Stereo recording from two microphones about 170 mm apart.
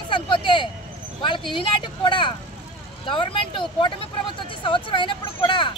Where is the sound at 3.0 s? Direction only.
30° left (ahead or behind).